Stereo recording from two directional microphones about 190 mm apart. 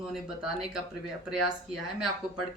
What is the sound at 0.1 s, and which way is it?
Speech, 5° right (ahead or behind).